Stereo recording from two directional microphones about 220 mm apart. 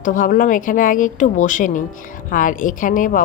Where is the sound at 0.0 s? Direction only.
35° left (ahead or behind).